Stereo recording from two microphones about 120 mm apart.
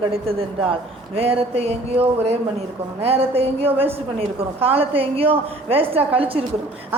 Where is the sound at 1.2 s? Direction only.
55° right (ahead or behind).